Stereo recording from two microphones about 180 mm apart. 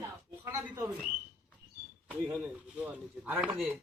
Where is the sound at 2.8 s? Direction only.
10° right (ahead or behind).